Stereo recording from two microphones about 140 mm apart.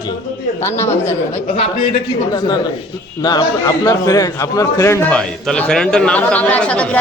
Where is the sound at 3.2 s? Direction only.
30° left (ahead or behind).